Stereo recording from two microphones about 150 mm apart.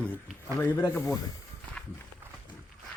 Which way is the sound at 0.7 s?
25° left (ahead or behind).